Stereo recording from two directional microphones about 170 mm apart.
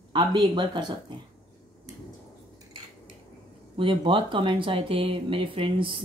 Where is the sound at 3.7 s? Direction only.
30° right (ahead or behind).